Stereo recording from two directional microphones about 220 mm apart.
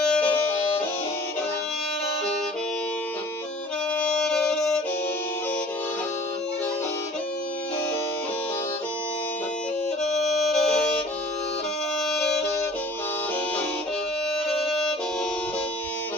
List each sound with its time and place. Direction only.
0.0 s music: 5° left (ahead or behind)
3.9 s music: 5° left (ahead or behind)
10.0 s music: centre (ahead or behind)
12.0 s music: centre (ahead or behind)